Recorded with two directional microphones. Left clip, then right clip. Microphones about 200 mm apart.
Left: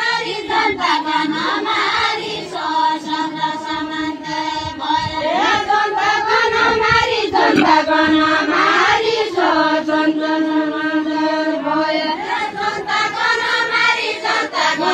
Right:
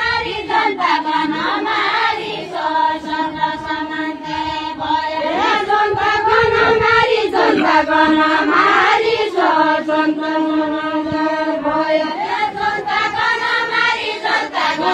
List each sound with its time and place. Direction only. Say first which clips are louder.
5.3 s child singing: left 1 dB; 40° right (ahead or behind)
7.7 s chant: right 1 dB; 40° right (ahead or behind)